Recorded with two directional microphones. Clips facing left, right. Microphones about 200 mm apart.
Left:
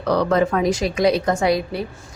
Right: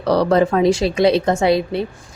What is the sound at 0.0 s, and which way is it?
A woman's voice, 35° right (ahead or behind).